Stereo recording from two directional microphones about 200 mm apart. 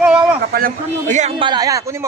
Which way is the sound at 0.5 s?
40° right (ahead or behind).